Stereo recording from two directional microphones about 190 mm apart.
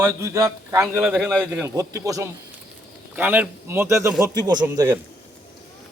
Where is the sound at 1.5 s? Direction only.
15° right (ahead or behind).